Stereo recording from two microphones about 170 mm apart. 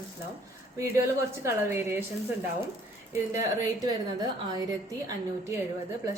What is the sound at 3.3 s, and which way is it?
A woman's voice, 20° right (ahead or behind).